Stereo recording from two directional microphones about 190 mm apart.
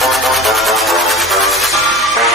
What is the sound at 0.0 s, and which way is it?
Music, centre (ahead or behind).